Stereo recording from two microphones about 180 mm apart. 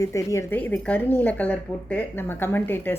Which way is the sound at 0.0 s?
20° left (ahead or behind).